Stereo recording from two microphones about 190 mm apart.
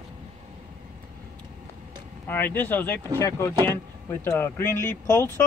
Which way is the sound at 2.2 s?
10° left (ahead or behind).